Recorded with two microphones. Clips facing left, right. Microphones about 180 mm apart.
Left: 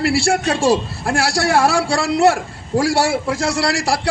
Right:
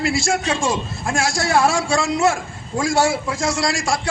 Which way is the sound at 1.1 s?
65° left (ahead or behind).